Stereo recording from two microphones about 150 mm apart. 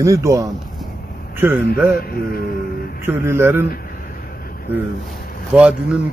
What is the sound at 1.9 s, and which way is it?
Speech, 80° left.